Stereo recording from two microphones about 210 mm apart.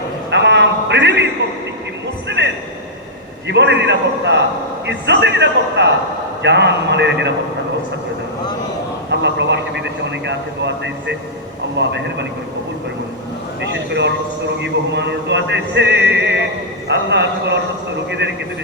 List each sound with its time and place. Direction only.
0.3 s a sound: 55° right (ahead or behind)
3.4 s speech: 55° right (ahead or behind)
9.0 s vehicle: 55° right (ahead or behind)
11.8 s speech: 55° right (ahead or behind)
13.6 s speech: 55° right (ahead or behind)